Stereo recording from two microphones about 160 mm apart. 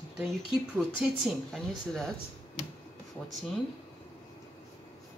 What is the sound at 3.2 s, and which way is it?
Speech, 5° left (ahead or behind).